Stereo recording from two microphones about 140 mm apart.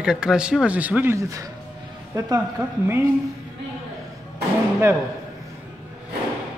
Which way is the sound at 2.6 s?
15° right (ahead or behind).